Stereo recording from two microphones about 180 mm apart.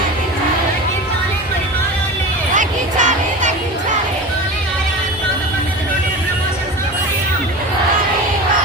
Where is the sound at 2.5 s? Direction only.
45° right (ahead or behind).